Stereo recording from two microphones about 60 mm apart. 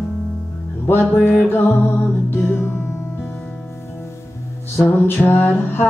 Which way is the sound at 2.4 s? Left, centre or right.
Left.